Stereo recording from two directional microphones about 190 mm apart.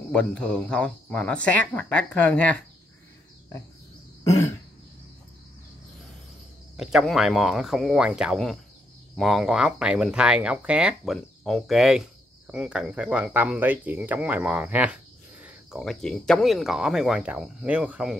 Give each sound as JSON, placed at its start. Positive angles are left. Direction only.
{"t": 0.1, "sound": "speech", "side_deg": 5}
{"t": 4.2, "sound": "throat clearing", "side_deg": 15}
{"t": 6.8, "sound": "speech", "side_deg": 0}